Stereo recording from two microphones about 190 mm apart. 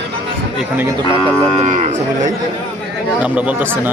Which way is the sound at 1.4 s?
35° right (ahead or behind).